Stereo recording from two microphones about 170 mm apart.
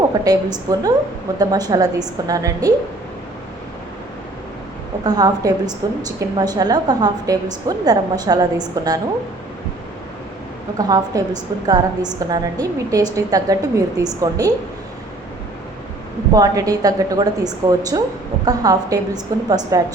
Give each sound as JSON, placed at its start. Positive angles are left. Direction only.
{"t": 0.1, "sound": "a woman's voice", "side_deg": -20}
{"t": 5.0, "sound": "a woman's voice", "side_deg": -20}
{"t": 10.8, "sound": "a woman's voice", "side_deg": -20}
{"t": 16.3, "sound": "a woman's voice", "side_deg": -20}